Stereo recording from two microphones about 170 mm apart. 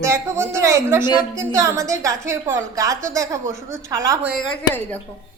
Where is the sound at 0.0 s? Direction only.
15° right (ahead or behind).